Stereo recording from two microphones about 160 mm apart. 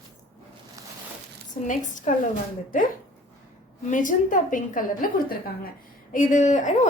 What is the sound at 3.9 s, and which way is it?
A woman's voice, 55° left (ahead or behind).